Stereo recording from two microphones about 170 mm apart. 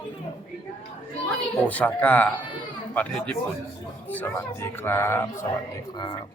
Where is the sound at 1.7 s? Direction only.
10° left (ahead or behind).